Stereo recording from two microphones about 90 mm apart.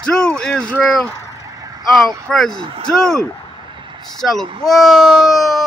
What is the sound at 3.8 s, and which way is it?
Vehicle, 65° right (ahead or behind).